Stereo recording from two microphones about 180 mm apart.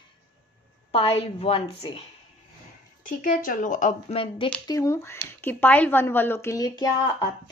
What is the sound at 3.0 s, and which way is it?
Speech, 50° left (ahead or behind).